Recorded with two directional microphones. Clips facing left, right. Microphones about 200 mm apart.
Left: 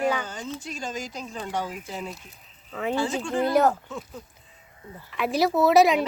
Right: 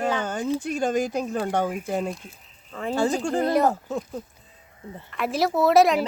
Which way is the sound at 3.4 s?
Centre (ahead or behind).